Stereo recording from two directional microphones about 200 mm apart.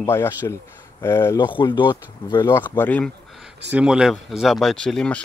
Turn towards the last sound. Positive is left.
turn(degrees=5)  # may be behind; listen again after turning